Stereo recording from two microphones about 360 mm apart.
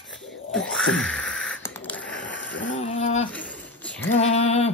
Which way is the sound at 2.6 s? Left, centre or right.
Centre.